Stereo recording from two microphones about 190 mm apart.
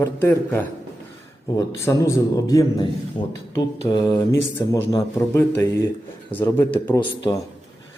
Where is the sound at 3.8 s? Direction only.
20° left (ahead or behind).